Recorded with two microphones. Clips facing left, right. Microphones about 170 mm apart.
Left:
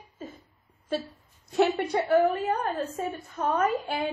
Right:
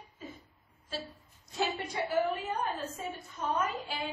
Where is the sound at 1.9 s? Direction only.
60° left (ahead or behind).